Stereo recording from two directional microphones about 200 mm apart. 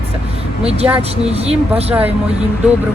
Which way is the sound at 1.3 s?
30° right (ahead or behind).